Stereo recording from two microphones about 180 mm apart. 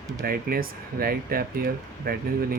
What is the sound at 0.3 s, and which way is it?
Speech, 55° right (ahead or behind).